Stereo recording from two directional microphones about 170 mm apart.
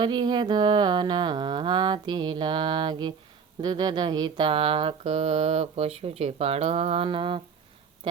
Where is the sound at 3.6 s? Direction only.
25° right (ahead or behind).